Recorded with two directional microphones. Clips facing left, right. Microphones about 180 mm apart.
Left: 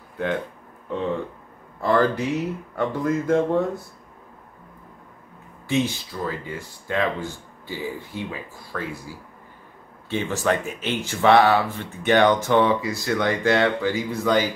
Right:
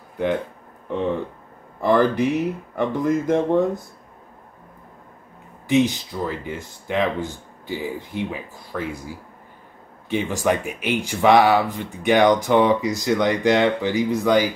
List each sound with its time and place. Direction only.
1.8 s speech: 15° right (ahead or behind)
5.7 s speech: 15° right (ahead or behind)